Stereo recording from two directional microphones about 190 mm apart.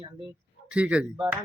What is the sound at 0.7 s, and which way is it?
Speech, 5° right (ahead or behind).